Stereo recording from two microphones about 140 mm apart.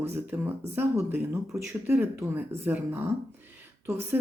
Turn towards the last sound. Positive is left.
turn(degrees=-15)  # may be behind; listen again after turning